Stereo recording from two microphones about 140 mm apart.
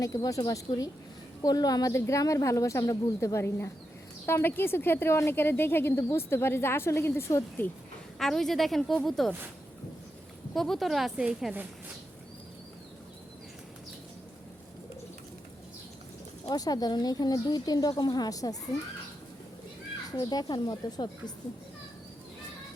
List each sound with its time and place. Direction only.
0.0 s a woman's voice: 25° left (ahead or behind)
8.2 s a woman's voice: 5° left (ahead or behind)
10.5 s a woman's voice: centre (ahead or behind)
16.5 s a woman's voice: 25° left (ahead or behind)
20.1 s a woman's voice: 30° left (ahead or behind)